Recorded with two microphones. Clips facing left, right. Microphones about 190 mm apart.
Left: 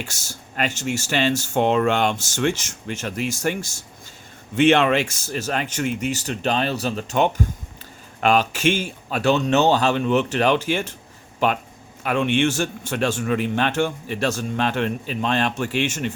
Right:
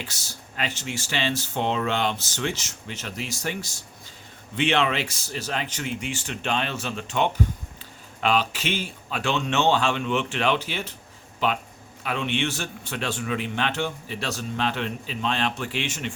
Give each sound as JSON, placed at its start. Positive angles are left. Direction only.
{"t": 0.0, "sound": "a man's voice", "side_deg": 45}